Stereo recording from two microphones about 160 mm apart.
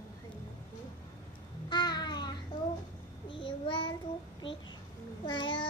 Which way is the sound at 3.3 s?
30° left (ahead or behind).